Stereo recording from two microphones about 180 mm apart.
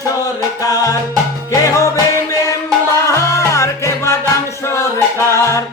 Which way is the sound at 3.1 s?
15° left (ahead or behind).